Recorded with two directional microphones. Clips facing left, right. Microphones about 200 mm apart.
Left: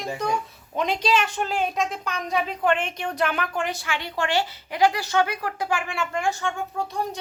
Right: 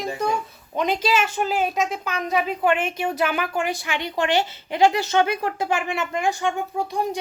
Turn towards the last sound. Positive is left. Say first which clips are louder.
# right 3 dB
turn(degrees=-15)  # may be behind; listen again after turning